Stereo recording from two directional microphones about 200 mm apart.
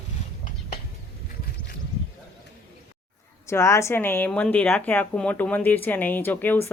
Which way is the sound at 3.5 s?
15° left (ahead or behind).